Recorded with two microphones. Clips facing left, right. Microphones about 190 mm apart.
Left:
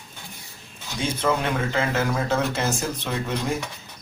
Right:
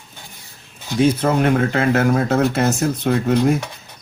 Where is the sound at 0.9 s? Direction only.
55° right (ahead or behind).